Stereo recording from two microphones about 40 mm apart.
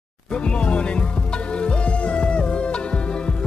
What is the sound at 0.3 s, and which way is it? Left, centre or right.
Music, left.